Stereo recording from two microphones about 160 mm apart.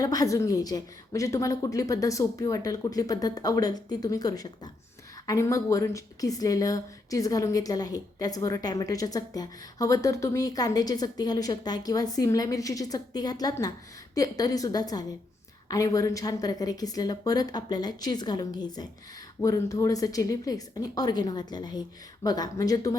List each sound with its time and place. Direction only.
0.0 s a woman's voice: 25° left (ahead or behind)